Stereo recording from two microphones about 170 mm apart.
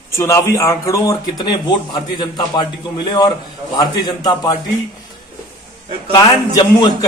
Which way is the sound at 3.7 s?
25° left (ahead or behind).